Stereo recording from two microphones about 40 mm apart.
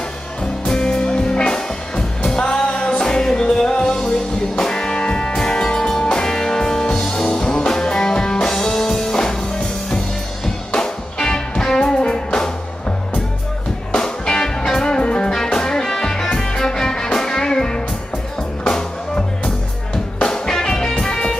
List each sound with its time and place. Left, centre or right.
0.4 s music: centre
10.4 s music: centre
13.9 s music: centre